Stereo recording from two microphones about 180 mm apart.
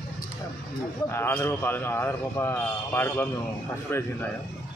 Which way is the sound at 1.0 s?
10° left (ahead or behind).